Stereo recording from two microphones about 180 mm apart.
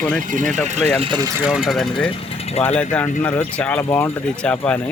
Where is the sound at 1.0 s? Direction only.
25° right (ahead or behind).